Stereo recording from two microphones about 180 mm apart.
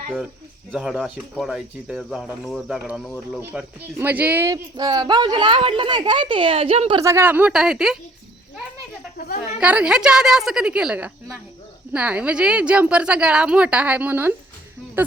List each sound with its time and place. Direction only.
0.7 s speech: centre (ahead or behind); by 7.0 s 30° right (ahead or behind)
7.0 s speech: 15° right (ahead or behind)
9.1 s a woman's voice: 55° left (ahead or behind)
9.6 s a woman's voice: 5° right (ahead or behind)